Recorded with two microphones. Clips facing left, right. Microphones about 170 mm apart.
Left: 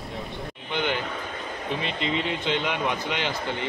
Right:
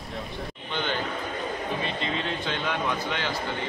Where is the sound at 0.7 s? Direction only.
15° left (ahead or behind).